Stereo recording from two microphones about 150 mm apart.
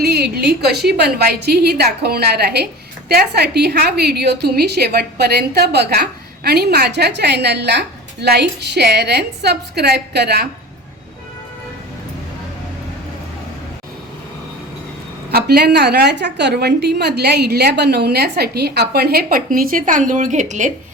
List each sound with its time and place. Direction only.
0.0 s a woman's voice: 90° right
15.3 s a woman's voice: 90° right; by 20.7 s 55° right (ahead or behind)